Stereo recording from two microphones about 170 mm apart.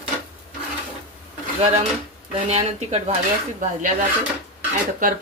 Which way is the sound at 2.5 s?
35° right (ahead or behind).